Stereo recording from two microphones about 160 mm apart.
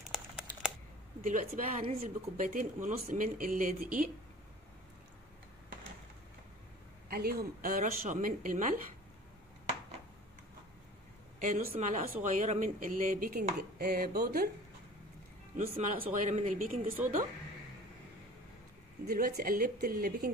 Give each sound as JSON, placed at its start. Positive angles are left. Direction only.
{"t": 0.1, "sound": "crumpling", "side_deg": -5}
{"t": 1.2, "sound": "chopping", "side_deg": -55}
{"t": 7.1, "sound": "chopping", "side_deg": -70}
{"t": 11.3, "sound": "a woman's voice", "side_deg": -55}
{"t": 11.8, "sound": "chopping", "side_deg": -50}
{"t": 15.5, "sound": "speech", "side_deg": -45}
{"t": 19.0, "sound": "speech", "side_deg": -70}